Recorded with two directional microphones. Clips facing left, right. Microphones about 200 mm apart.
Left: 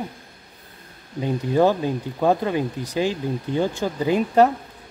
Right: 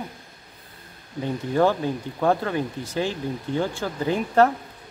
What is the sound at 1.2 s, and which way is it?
Speech, 15° left (ahead or behind).